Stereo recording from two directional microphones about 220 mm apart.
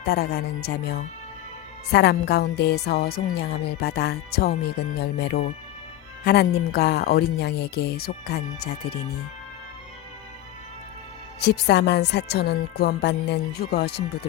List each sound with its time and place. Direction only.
0.1 s speech: 45° left (ahead or behind)
11.3 s speech: 50° left (ahead or behind)